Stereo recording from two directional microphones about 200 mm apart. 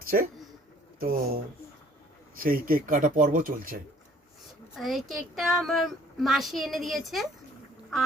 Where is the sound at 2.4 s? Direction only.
45° right (ahead or behind).